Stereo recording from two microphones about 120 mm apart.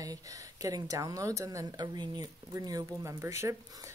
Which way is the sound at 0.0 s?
30° right (ahead or behind).